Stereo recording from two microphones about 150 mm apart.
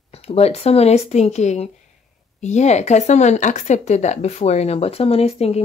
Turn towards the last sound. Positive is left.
turn(degrees=45)  # may be behind; listen again after turning